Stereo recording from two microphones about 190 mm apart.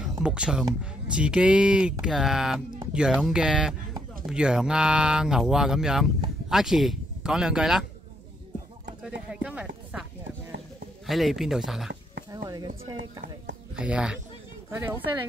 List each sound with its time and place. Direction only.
0.2 s speech: 5° right (ahead or behind)
9.0 s speech: 5° right (ahead or behind)
12.3 s speech: 20° right (ahead or behind)
13.7 s speech: 5° right (ahead or behind)